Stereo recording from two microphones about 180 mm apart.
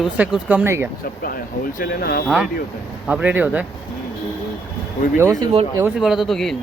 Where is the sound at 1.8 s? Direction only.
55° left (ahead or behind).